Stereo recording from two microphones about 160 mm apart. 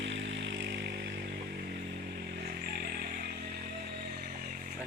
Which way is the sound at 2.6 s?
70° right (ahead or behind).